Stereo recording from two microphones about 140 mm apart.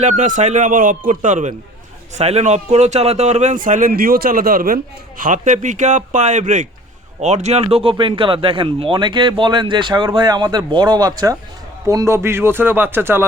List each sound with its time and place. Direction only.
0.0 s speech: 60° right (ahead or behind)
2.1 s speech: 50° right (ahead or behind); by 4.8 s 90° right
5.2 s speech: 65° right (ahead or behind); by 13.2 s 15° right (ahead or behind)